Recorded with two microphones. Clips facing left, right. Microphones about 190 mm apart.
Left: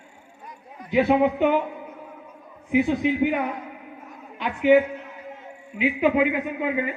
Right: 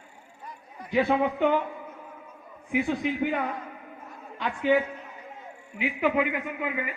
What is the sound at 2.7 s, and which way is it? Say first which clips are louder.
A man's voice: left 6 dB; 20° left (ahead or behind).